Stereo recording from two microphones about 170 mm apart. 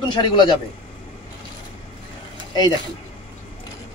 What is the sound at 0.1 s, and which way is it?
Speech, 25° left (ahead or behind).